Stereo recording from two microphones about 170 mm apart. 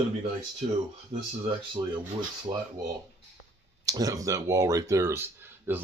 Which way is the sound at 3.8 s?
20° right (ahead or behind).